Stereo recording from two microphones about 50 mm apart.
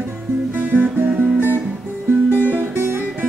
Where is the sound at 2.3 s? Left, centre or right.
Right.